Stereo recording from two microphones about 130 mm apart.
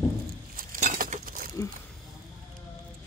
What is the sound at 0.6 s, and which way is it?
Chink, 90° right.